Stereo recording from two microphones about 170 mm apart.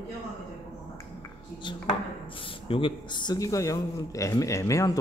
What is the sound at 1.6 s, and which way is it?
Speech, 30° left (ahead or behind).